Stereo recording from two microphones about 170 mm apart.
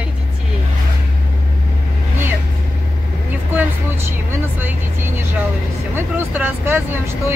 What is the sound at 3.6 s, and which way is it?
Vehicle, 10° right (ahead or behind).